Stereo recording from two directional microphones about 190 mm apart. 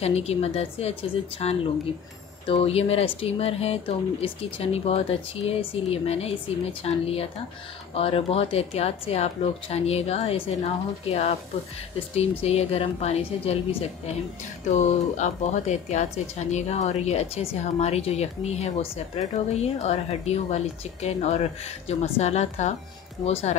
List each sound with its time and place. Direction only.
0.0 s speech: 35° left (ahead or behind)